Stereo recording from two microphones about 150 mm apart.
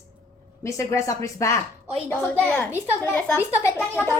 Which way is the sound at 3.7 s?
15° left (ahead or behind).